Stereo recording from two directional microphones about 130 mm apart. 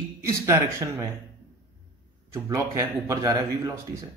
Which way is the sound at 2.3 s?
20° right (ahead or behind).